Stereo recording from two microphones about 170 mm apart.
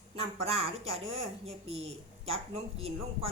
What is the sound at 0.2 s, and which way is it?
A woman's voice, 35° right (ahead or behind).